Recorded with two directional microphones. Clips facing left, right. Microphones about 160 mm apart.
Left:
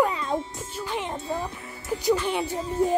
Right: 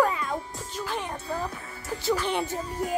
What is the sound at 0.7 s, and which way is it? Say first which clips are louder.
Speech: left 2 dB; 15° left (ahead or behind).